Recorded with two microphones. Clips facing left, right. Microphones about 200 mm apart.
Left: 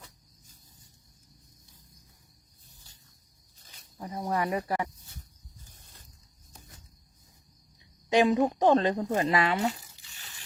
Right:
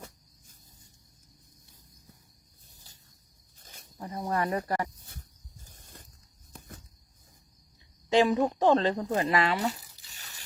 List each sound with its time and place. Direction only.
3.6 s snake: 50° right (ahead or behind)
4.0 s speech: 10° left (ahead or behind)
4.9 s speech: 55° right (ahead or behind)
5.7 s a sound: 55° right (ahead or behind)
8.1 s speech: 15° left (ahead or behind)
10.1 s a sound: 40° right (ahead or behind)